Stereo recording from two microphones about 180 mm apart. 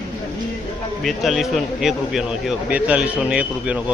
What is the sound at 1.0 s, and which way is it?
A man's voice, centre (ahead or behind).